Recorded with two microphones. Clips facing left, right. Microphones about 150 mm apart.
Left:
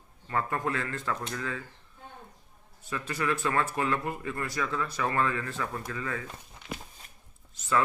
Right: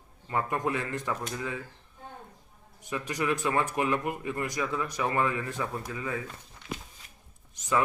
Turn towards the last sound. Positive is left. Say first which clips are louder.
# right 1 dB
turn(degrees=-15)  # may be behind; listen again after turning